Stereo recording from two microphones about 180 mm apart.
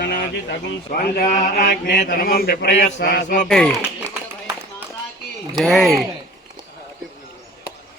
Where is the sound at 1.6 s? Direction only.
65° left (ahead or behind).